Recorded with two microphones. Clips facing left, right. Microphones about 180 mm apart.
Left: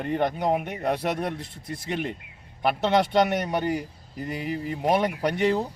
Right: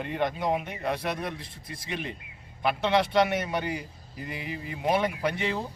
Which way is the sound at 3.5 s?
45° left (ahead or behind).